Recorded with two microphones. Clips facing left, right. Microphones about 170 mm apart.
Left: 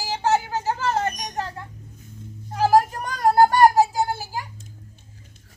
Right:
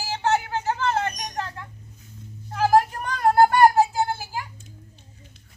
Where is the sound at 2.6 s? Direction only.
40° left (ahead or behind).